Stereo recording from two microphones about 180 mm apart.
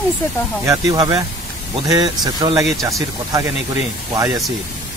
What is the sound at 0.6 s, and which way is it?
Speech, 20° right (ahead or behind).